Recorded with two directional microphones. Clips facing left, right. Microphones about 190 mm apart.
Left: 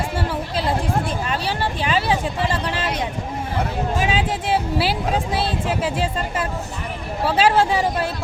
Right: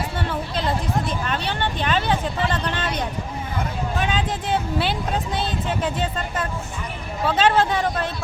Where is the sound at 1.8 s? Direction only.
5° left (ahead or behind).